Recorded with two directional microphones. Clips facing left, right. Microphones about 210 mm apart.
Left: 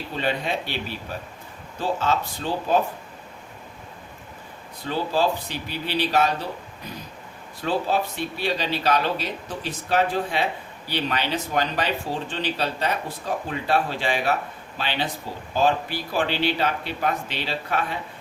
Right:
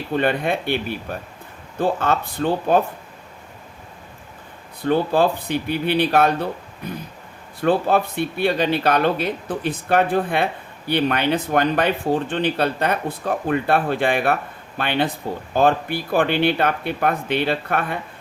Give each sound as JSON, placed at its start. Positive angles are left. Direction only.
{"t": 0.1, "sound": "speech", "side_deg": -55}
{"t": 4.8, "sound": "speech", "side_deg": -55}
{"t": 7.6, "sound": "speech", "side_deg": -55}